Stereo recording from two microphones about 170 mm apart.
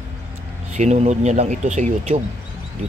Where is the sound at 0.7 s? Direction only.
40° right (ahead or behind).